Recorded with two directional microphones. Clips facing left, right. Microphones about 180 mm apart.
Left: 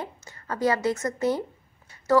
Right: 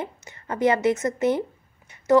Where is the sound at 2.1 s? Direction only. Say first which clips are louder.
Right 3 dB; 20° right (ahead or behind).